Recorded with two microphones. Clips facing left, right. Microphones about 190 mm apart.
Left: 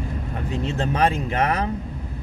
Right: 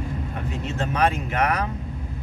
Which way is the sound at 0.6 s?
30° left (ahead or behind).